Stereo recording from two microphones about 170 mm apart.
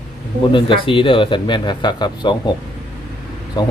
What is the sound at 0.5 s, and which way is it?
Speech, 30° left (ahead or behind).